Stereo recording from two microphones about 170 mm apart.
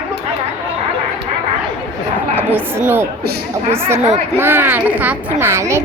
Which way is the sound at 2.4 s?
10° right (ahead or behind).